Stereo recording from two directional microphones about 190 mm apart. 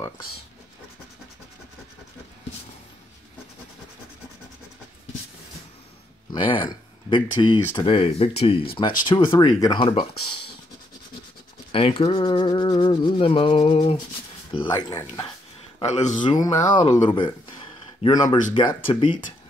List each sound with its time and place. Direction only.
6.3 s rub: 25° left (ahead or behind)
11.7 s rub: 30° left (ahead or behind)
15.8 s speech: 35° left (ahead or behind)
16.2 s rub: 20° left (ahead or behind)